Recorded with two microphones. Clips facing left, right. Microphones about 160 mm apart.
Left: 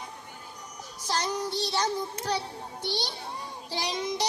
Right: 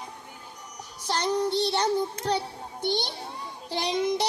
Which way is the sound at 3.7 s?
55° right (ahead or behind).